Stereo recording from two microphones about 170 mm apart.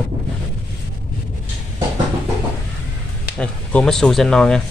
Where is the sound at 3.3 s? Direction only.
5° left (ahead or behind).